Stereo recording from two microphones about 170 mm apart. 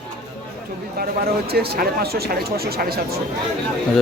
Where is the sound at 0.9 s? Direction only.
65° right (ahead or behind).